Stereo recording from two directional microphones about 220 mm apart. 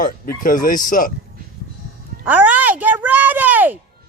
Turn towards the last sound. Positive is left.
turn(degrees=-10)  # may be behind; listen again after turning